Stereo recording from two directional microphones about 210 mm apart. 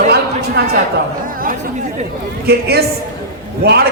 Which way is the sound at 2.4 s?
50° right (ahead or behind).